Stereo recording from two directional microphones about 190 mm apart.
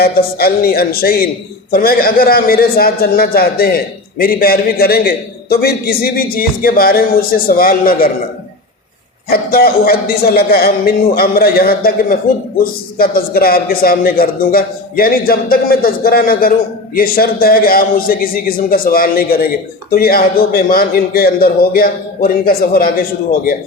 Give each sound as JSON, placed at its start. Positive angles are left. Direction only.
{"t": 0.0, "sound": "a man's voice", "side_deg": 55}
{"t": 9.3, "sound": "a man's voice", "side_deg": 55}